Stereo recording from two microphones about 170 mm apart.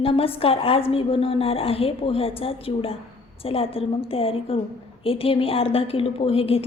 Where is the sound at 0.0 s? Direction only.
35° left (ahead or behind).